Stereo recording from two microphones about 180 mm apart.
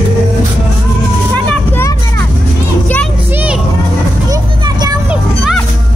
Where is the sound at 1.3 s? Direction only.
15° left (ahead or behind).